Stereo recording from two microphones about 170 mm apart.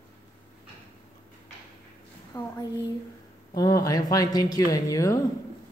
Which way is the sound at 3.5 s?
25° left (ahead or behind).